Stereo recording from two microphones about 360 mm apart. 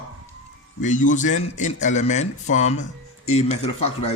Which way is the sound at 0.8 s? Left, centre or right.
Left.